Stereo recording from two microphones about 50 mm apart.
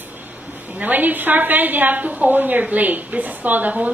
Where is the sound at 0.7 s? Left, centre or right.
Right.